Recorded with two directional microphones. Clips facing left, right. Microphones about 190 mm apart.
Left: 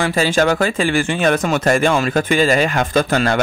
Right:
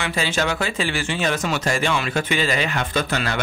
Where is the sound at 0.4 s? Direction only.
45° left (ahead or behind).